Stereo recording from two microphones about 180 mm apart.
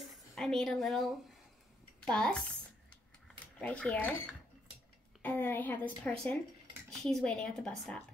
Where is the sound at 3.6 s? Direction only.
5° left (ahead or behind).